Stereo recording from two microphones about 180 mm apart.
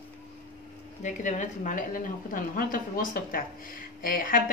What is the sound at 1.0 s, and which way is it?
A woman's voice, 45° left (ahead or behind).